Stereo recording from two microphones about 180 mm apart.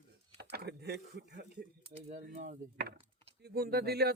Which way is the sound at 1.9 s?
35° right (ahead or behind).